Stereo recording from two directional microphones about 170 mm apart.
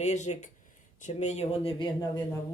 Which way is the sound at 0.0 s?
40° left (ahead or behind).